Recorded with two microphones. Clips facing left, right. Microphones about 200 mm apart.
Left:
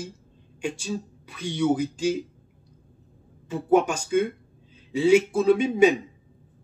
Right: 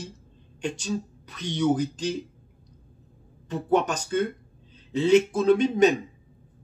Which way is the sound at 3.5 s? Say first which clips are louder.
Left 3 dB; 10° left (ahead or behind).